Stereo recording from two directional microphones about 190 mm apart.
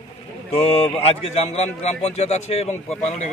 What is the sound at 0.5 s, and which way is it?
A man's voice, 30° left (ahead or behind).